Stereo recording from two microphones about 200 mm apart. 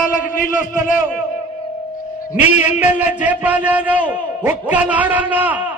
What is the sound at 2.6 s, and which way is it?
A man's voice, 10° right (ahead or behind).